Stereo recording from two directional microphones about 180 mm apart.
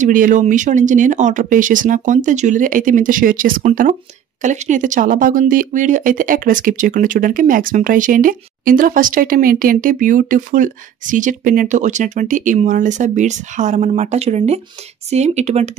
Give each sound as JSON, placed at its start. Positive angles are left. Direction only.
{"t": 0.0, "sound": "speech", "side_deg": -45}